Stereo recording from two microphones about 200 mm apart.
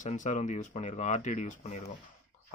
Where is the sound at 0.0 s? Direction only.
40° left (ahead or behind).